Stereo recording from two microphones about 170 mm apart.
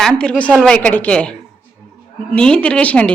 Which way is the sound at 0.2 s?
5° left (ahead or behind).